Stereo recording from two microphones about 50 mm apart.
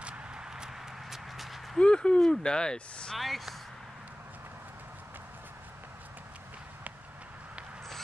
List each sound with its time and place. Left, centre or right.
0.0 s clip-clop: centre
1.8 s speech: centre
3.2 s speech: centre